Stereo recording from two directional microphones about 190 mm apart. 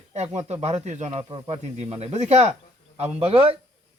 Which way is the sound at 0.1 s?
35° right (ahead or behind).